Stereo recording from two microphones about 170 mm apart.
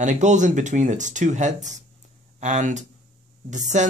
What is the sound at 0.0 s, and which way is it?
Speech, 45° right (ahead or behind).